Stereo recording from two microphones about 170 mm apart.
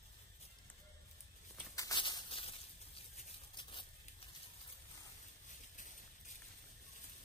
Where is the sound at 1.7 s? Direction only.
25° left (ahead or behind).